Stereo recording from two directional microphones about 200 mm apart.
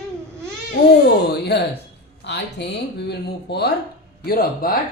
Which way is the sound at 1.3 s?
55° left (ahead or behind).